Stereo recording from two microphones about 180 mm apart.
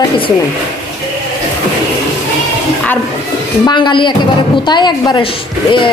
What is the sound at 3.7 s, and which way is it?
A woman's voice, 25° left (ahead or behind).